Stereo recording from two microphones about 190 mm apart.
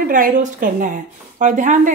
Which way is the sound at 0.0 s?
45° right (ahead or behind).